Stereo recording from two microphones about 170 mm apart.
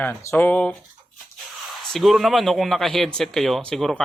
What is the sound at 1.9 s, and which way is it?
Speech, centre (ahead or behind).